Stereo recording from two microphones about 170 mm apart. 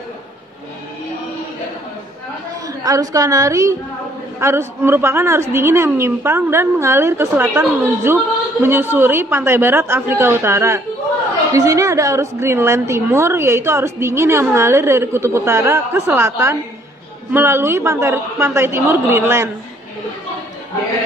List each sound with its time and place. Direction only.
2.8 s a woman's voice: 20° right (ahead or behind)